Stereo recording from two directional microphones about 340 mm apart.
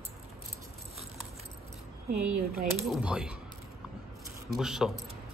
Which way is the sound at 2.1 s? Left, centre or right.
Right.